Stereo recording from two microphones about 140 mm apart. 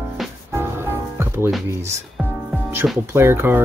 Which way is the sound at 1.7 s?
20° right (ahead or behind).